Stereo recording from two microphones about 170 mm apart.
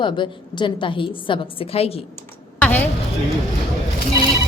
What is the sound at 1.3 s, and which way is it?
Speech, 35° left (ahead or behind).